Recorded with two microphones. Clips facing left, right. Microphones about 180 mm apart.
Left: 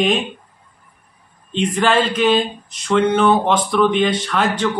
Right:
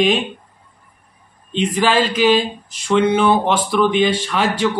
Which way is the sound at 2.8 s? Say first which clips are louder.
Even; 10° right (ahead or behind).